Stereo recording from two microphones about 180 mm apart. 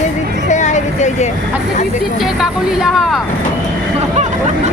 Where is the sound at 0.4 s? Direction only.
40° left (ahead or behind).